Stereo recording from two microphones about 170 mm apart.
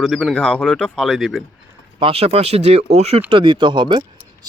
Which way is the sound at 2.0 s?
35° right (ahead or behind).